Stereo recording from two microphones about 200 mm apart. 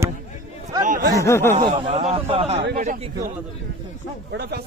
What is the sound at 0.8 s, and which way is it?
Speech, 40° right (ahead or behind).